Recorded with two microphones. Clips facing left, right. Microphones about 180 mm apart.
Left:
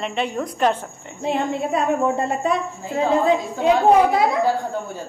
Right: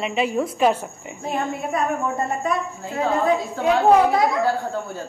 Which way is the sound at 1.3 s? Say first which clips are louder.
Left 3 dB; 30° left (ahead or behind).